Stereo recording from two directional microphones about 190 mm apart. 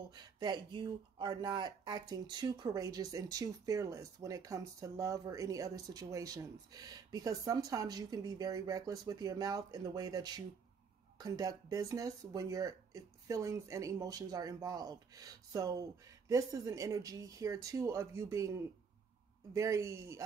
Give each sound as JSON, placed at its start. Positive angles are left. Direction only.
{"t": 0.1, "sound": "speech", "side_deg": -25}